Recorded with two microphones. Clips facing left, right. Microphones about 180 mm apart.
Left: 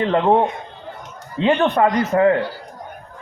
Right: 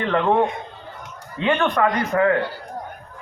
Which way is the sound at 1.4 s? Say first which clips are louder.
Left 3 dB; 25° left (ahead or behind).